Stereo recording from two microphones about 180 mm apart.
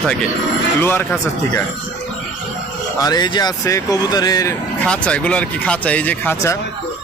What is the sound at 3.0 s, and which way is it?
Speech, 20° left (ahead or behind).